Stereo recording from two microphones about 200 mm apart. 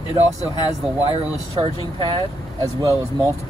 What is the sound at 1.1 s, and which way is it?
Speech, 25° right (ahead or behind).